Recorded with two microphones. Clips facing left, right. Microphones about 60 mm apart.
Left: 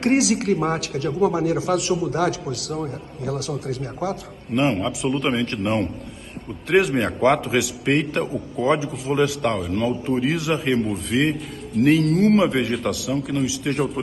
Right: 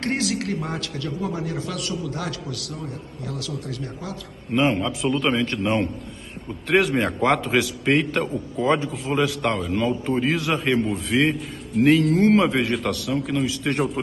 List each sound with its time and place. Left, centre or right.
0.2 s a man's voice: right
1.2 s a man's voice: left
1.7 s a man's voice: left
4.6 s a man's voice: centre